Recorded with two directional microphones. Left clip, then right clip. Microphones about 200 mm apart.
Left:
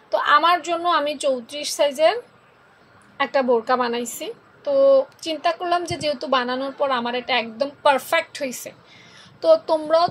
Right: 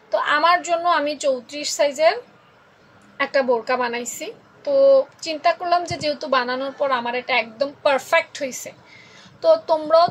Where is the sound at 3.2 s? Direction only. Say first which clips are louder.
Even; 15° left (ahead or behind).